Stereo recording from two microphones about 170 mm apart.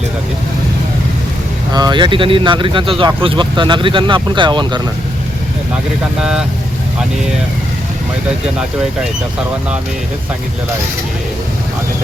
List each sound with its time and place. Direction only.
1.7 s speech: 25° right (ahead or behind)